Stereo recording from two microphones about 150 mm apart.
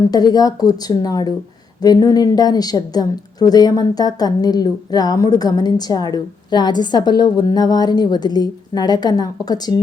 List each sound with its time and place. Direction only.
0.1 s a woman's voice: 25° left (ahead or behind)